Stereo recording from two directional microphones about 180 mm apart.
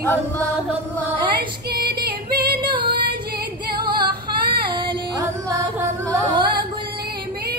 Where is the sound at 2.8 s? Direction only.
55° right (ahead or behind).